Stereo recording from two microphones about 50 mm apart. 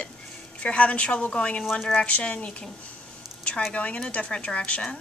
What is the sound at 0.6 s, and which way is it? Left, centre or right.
A woman's voice, left.